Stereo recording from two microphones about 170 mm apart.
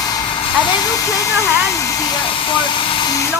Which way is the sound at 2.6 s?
25° left (ahead or behind).